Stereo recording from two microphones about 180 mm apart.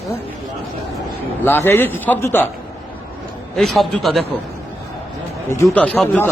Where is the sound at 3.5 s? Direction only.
Centre (ahead or behind).